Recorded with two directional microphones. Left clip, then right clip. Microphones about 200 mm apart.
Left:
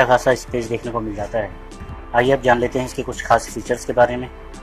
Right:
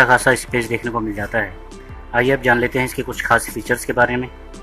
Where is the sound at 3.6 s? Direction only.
20° right (ahead or behind).